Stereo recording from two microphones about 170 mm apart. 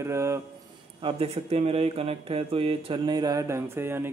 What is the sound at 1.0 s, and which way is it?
A man's voice, 35° right (ahead or behind).